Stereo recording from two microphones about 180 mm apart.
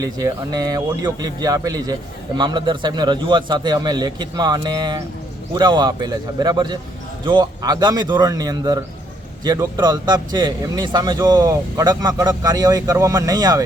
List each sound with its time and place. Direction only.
0.0 s speech: 20° right (ahead or behind)